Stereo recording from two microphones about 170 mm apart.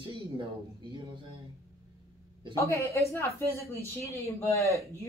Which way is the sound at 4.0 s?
15° left (ahead or behind).